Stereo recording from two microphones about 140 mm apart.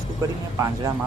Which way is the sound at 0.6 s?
20° right (ahead or behind).